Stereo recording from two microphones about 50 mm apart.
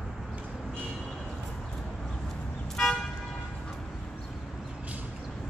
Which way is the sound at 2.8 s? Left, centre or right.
Centre.